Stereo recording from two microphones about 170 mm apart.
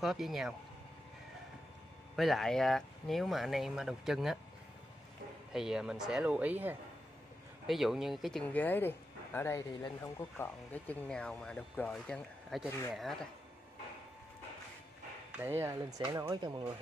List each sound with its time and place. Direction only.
0.0 s speech: centre (ahead or behind)
2.1 s speech: centre (ahead or behind)
5.5 s speech: 5° right (ahead or behind)
15.3 s speech: 15° right (ahead or behind)